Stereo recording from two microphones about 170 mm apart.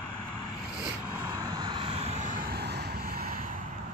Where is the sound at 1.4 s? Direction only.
25° right (ahead or behind); by 3.4 s 60° right (ahead or behind).